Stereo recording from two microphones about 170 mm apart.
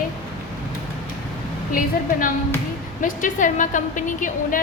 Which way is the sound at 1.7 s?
50° left (ahead or behind).